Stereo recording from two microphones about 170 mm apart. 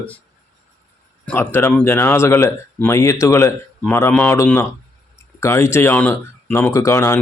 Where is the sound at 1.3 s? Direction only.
15° left (ahead or behind).